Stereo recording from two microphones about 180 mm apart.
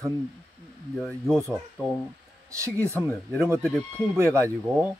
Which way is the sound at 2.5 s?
15° right (ahead or behind).